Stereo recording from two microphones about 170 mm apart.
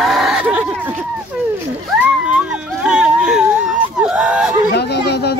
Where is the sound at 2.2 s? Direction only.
5° right (ahead or behind).